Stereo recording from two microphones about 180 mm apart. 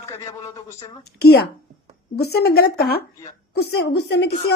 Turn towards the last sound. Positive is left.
turn(degrees=70)  # may be behind; listen again after turning